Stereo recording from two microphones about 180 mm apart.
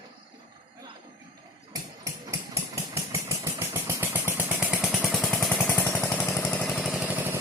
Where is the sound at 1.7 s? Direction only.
20° right (ahead or behind).